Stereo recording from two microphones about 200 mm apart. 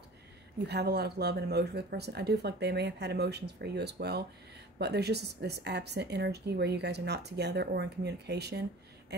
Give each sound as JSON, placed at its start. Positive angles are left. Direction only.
{"t": 0.7, "sound": "a woman's voice", "side_deg": -55}